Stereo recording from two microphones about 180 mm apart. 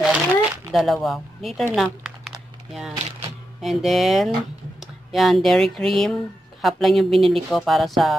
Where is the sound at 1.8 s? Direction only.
Centre (ahead or behind).